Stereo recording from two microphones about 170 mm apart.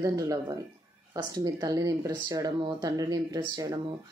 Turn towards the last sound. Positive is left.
turn(degrees=-25)  # may be behind; listen again after turning